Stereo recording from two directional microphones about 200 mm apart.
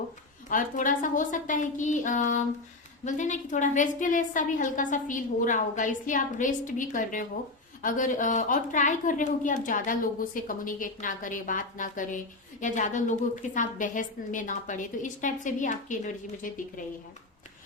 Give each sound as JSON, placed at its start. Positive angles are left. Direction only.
{"t": 0.4, "sound": "a woman's voice", "side_deg": 40}